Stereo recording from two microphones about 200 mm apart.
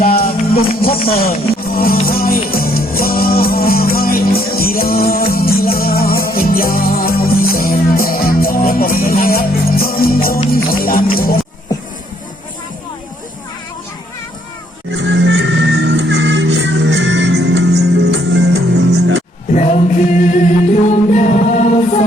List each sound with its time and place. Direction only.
0.0 s music: 50° left (ahead or behind)
0.9 s speech: 30° left (ahead or behind)
1.1 s music: 45° left (ahead or behind)
14.9 s music: 65° right (ahead or behind)
19.5 s a capella: 35° left (ahead or behind)
20.9 s music: 35° left (ahead or behind)